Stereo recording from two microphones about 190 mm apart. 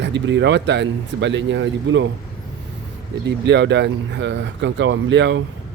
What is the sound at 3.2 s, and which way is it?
A man's voice, 65° right (ahead or behind).